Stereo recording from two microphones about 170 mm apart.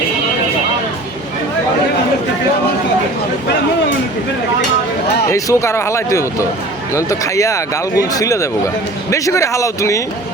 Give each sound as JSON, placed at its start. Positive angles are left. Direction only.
{"t": 5.3, "sound": "speech", "side_deg": 15}